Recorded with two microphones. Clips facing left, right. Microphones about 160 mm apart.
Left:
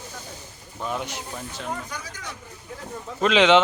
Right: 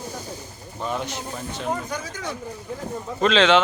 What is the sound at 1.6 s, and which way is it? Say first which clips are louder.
Speech: right 7 dB; 45° right (ahead or behind).